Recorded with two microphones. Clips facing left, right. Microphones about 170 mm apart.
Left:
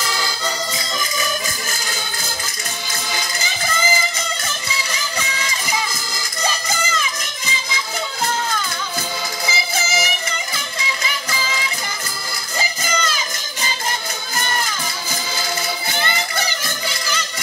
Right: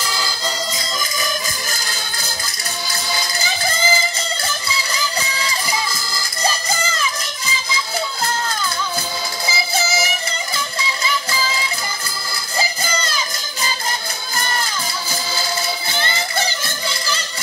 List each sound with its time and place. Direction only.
2.9 s music: 35° right (ahead or behind)
5.3 s music: 35° right (ahead or behind)
9.5 s music: 30° right (ahead or behind)
12.5 s a sound: 30° right (ahead or behind)